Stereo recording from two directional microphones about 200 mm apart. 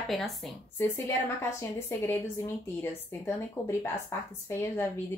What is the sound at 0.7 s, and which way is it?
A woman's voice, 10° left (ahead or behind).